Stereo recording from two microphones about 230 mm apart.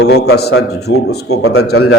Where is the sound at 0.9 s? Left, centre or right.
Left.